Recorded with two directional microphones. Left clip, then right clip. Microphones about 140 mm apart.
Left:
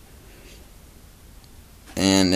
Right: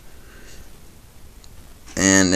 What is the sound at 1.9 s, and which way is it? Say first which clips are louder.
Speech: right 3 dB; 15° left (ahead or behind).